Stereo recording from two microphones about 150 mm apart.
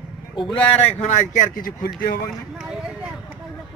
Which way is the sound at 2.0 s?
80° left.